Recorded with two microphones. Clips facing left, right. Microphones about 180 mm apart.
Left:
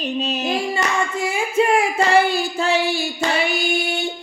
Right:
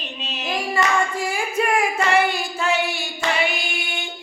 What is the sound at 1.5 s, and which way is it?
Singing, 30° left (ahead or behind).